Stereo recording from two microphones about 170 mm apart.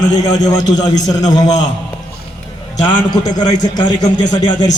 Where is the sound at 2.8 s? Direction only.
25° left (ahead or behind).